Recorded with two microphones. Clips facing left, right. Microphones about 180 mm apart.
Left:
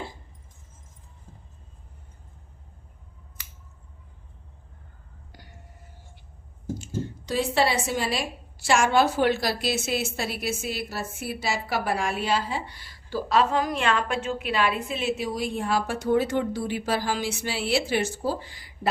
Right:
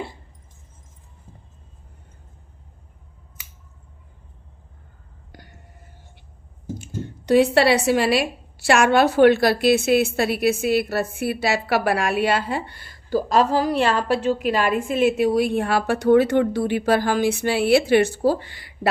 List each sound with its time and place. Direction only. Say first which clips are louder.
6.7 s a woman's voice: left 1 dB; 60° right (ahead or behind)